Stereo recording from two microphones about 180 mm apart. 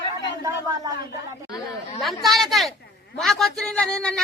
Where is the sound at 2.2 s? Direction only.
Centre (ahead or behind).